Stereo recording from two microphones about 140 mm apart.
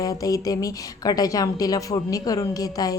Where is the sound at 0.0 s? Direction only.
25° left (ahead or behind).